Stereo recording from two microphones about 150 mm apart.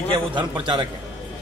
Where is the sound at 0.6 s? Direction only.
30° right (ahead or behind).